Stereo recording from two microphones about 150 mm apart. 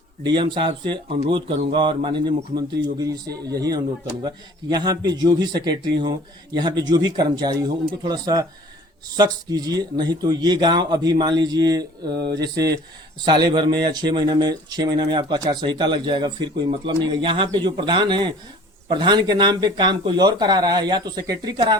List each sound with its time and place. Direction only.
0.3 s speech: 30° right (ahead or behind)